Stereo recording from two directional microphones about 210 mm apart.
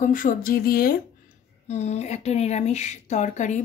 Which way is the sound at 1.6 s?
30° left (ahead or behind).